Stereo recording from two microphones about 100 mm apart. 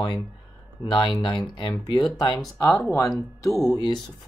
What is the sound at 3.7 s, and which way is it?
Speech, 45° left (ahead or behind).